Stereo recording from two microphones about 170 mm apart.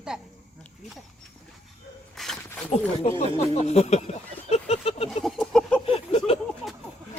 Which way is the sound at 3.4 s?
40° left (ahead or behind).